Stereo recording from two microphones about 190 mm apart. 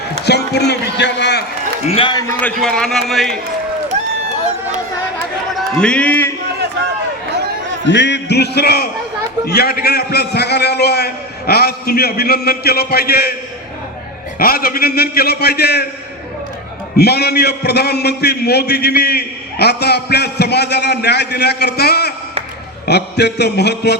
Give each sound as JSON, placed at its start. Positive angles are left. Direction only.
{"t": 0.3, "sound": "a man's voice", "side_deg": 60}
{"t": 1.9, "sound": "a man's voice", "side_deg": 25}
{"t": 2.4, "sound": "a man's voice", "side_deg": 5}
{"t": 5.8, "sound": "a man's voice", "side_deg": 5}
{"t": 7.9, "sound": "a man's voice", "side_deg": 70}
{"t": 14.3, "sound": "a man's voice", "side_deg": 50}
{"t": 17.0, "sound": "a man's voice", "side_deg": 60}